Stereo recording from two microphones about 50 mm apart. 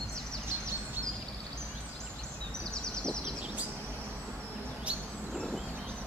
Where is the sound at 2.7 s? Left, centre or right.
Centre.